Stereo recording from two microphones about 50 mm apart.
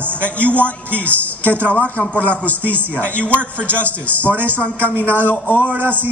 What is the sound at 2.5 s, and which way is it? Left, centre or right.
A man's voice, right.